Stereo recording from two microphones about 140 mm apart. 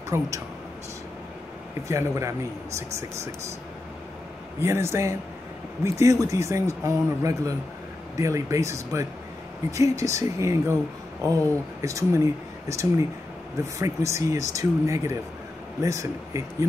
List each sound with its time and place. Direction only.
0.1 s speech: 20° right (ahead or behind)
1.9 s speech: 20° right (ahead or behind)
4.6 s speech: 20° right (ahead or behind)